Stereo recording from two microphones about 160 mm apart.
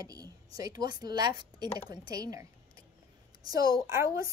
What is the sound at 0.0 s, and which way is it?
A woman's voice, 20° right (ahead or behind).